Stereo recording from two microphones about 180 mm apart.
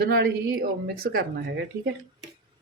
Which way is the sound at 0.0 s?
65° right (ahead or behind).